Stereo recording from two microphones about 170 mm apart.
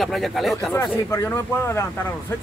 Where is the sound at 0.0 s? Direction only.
Centre (ahead or behind).